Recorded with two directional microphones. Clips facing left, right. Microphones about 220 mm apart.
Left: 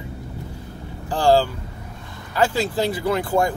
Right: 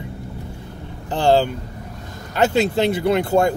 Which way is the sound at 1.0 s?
20° right (ahead or behind).